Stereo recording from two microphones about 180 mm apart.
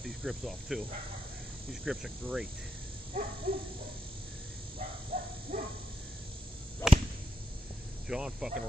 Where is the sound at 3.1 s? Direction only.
50° right (ahead or behind).